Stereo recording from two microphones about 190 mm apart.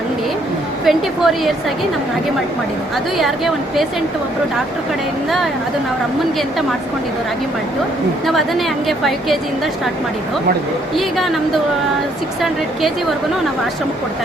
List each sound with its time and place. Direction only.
0.9 s a woman's voice: centre (ahead or behind)
3.2 s a woman's voice: centre (ahead or behind)
8.3 s a woman's voice: centre (ahead or behind)
10.9 s a woman's voice: centre (ahead or behind)
12.4 s a woman's voice: centre (ahead or behind)